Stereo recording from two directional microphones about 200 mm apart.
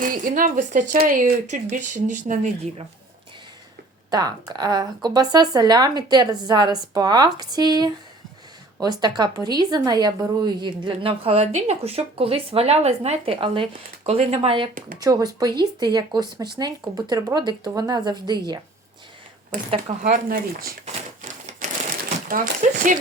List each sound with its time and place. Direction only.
0.0 s speech: 45° right (ahead or behind)
4.1 s a woman's voice: 20° right (ahead or behind)
19.7 s speech: 40° right (ahead or behind)